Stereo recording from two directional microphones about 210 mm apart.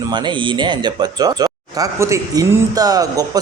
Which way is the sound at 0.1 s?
20° right (ahead or behind).